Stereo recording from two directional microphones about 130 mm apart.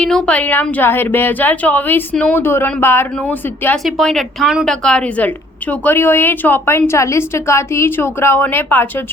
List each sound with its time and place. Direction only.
0.0 s a woman's voice: 5° left (ahead or behind)
3.8 s a woman's voice: centre (ahead or behind); by 9.0 s 15° left (ahead or behind)